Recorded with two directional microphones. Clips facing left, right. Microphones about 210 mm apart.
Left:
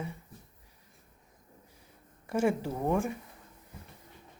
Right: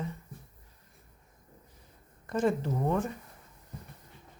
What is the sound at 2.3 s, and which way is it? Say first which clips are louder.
Speech: even; 10° left (ahead or behind).